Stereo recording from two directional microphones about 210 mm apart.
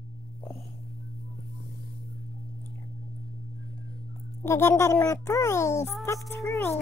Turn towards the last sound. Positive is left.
turn(degrees=15)  # may be behind; listen again after turning